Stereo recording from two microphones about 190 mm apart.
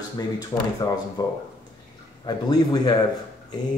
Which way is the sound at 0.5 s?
20° left (ahead or behind).